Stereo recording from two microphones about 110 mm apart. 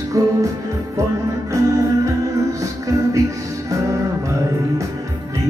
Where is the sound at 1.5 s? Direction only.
30° right (ahead or behind).